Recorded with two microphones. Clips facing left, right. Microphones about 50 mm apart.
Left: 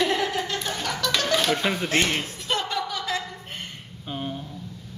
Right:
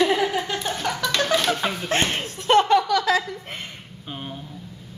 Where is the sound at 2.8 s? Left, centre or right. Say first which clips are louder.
Right 8 dB; right.